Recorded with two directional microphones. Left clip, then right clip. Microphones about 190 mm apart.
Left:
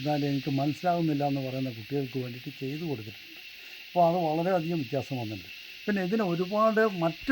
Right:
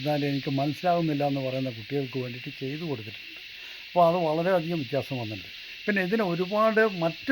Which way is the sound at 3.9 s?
20° right (ahead or behind).